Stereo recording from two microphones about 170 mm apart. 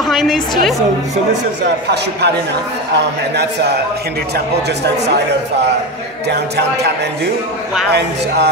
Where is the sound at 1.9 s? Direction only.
80° right.